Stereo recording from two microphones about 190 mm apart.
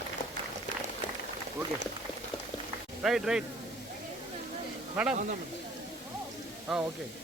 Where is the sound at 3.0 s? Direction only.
Centre (ahead or behind).